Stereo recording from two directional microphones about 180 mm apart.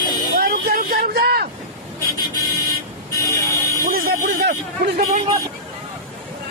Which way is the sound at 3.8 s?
55° right (ahead or behind).